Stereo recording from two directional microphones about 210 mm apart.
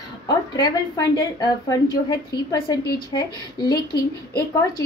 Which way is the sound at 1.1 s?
20° left (ahead or behind).